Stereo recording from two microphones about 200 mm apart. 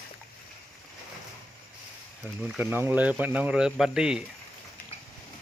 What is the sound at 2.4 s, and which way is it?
Speech, 5° right (ahead or behind).